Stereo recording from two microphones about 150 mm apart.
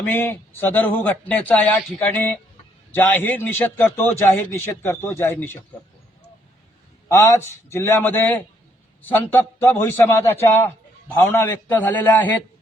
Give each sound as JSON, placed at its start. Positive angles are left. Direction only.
{"t": 0.0, "sound": "a man's voice", "side_deg": 15}
{"t": 7.1, "sound": "a man's voice", "side_deg": 20}